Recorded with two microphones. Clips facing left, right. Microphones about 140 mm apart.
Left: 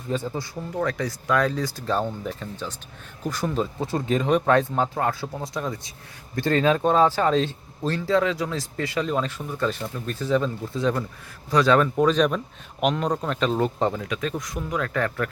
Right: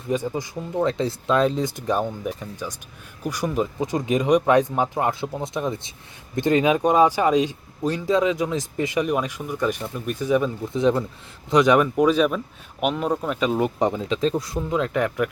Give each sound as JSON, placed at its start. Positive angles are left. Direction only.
{"t": 0.1, "sound": "speech", "side_deg": -15}